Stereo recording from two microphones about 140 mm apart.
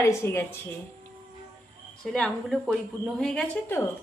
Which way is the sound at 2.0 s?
5° left (ahead or behind).